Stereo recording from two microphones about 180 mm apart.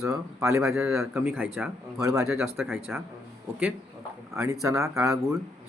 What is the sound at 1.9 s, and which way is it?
Speech, 20° right (ahead or behind).